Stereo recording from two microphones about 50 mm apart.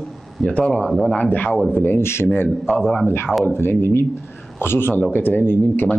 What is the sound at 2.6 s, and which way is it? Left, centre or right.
Speech, centre.